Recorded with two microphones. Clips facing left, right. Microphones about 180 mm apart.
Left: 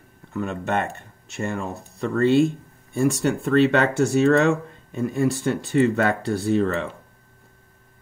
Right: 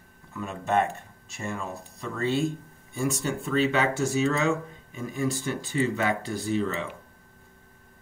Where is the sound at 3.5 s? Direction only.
60° left (ahead or behind).